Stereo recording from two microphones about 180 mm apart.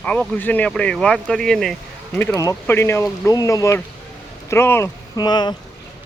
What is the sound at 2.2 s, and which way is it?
A man's voice, 15° left (ahead or behind).